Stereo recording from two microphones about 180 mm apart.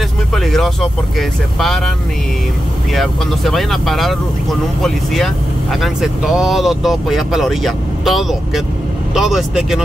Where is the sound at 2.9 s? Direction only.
Centre (ahead or behind).